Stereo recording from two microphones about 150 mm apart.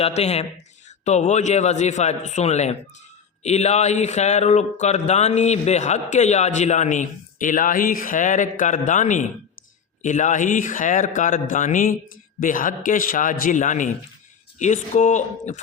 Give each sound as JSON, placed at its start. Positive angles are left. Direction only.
{"t": 0.0, "sound": "speech", "side_deg": 45}